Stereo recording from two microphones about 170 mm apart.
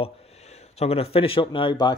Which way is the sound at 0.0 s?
35° left (ahead or behind).